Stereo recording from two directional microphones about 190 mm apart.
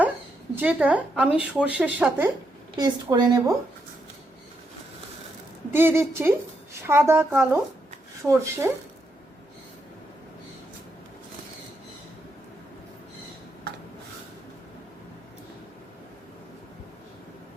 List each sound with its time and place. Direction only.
0.5 s speech: 5° right (ahead or behind)
2.7 s a woman's voice: 20° right (ahead or behind)
5.7 s speech: 10° right (ahead or behind)